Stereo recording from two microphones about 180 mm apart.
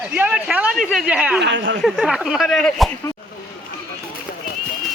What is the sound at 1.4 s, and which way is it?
Speech, 90° right.